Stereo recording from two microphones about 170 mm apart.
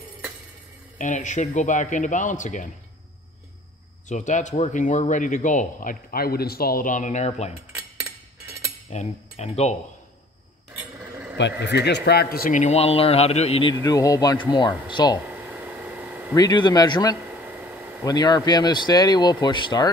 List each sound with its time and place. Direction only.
0.9 s speech: 45° left (ahead or behind)
4.1 s speech: 45° left (ahead or behind)
7.7 s cutlery: 5° right (ahead or behind)
8.9 s speech: 40° left (ahead or behind)
11.3 s speech: 90° left; by 15.1 s 25° left (ahead or behind)
15.2 s a sound: 10° right (ahead or behind)
16.3 s speech: 25° left (ahead or behind)
17.3 s a sound: 10° right (ahead or behind)
18.0 s speech: 25° left (ahead or behind)